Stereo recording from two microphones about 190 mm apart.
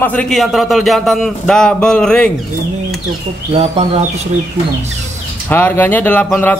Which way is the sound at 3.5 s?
35° right (ahead or behind).